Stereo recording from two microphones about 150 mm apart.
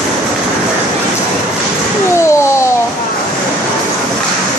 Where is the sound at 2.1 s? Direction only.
20° left (ahead or behind).